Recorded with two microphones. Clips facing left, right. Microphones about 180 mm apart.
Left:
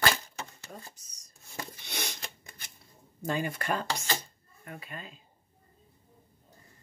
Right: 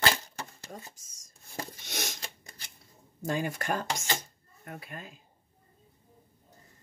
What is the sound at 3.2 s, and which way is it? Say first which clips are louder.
Speech: even; 45° right (ahead or behind).